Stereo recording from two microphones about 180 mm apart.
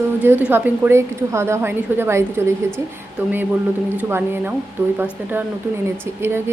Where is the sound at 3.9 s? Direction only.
10° right (ahead or behind).